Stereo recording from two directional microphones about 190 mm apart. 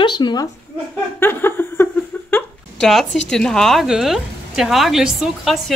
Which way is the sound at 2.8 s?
Centre (ahead or behind).